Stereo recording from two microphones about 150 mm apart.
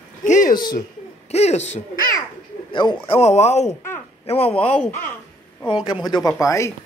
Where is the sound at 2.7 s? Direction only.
30° left (ahead or behind).